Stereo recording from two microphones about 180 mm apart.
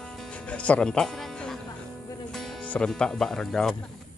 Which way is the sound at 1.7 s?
20° left (ahead or behind).